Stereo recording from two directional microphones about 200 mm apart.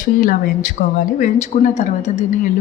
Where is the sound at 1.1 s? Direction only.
40° left (ahead or behind).